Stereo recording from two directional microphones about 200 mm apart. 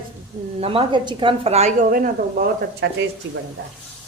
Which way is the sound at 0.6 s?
25° right (ahead or behind).